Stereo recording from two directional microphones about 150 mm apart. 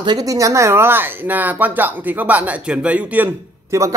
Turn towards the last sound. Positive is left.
turn(degrees=-20)  # may be behind; listen again after turning